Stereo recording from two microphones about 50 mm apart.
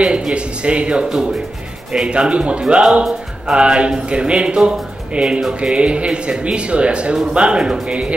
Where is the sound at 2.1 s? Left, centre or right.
Right.